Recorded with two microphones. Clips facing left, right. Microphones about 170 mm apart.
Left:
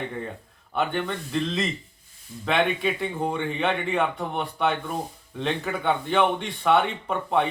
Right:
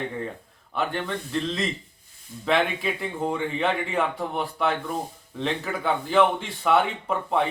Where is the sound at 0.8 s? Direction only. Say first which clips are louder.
Left 1 dB; centre (ahead or behind).